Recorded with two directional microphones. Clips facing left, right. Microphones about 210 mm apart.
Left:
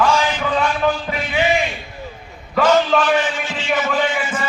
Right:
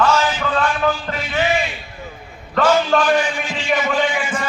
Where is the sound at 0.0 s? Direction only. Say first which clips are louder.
Even; 10° left (ahead or behind).